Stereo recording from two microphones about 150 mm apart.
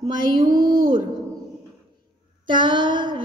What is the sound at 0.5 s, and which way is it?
Speech, 25° right (ahead or behind).